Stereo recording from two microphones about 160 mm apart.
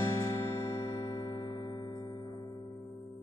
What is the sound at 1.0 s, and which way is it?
Music, 30° left (ahead or behind).